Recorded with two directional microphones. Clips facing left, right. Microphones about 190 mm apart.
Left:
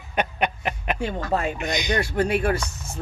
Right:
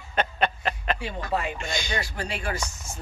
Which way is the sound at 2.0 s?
55° left (ahead or behind).